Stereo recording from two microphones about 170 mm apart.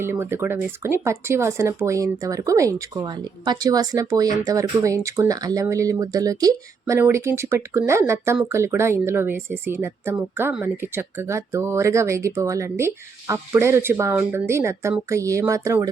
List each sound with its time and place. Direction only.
0.0 s speech: 15° right (ahead or behind)